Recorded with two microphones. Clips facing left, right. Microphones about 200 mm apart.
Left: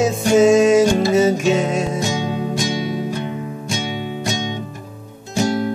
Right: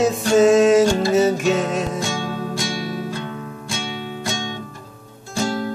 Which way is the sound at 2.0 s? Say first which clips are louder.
Left 4 dB; 20° left (ahead or behind).